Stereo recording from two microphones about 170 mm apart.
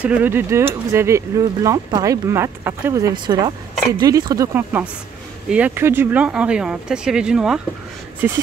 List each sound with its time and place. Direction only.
0.0 s speech: 10° right (ahead or behind)
5.5 s speech: 10° right (ahead or behind)